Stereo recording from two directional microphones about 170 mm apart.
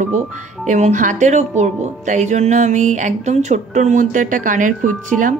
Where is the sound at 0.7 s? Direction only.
45° right (ahead or behind).